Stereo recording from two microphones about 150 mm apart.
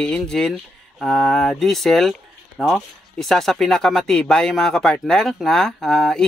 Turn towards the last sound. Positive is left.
turn(degrees=5)  # may be behind; listen again after turning